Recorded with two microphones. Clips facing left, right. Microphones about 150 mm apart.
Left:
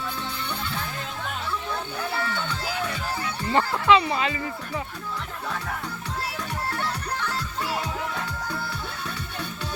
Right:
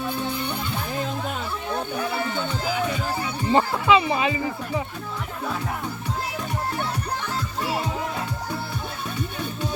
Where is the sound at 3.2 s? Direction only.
20° right (ahead or behind).